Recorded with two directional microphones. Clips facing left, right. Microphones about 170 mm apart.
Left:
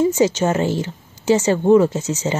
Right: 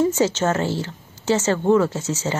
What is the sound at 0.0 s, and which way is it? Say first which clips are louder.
Speech: left 3 dB; 15° left (ahead or behind).